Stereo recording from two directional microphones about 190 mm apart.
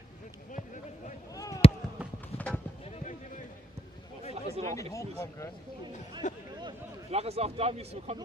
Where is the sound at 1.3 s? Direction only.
15° left (ahead or behind).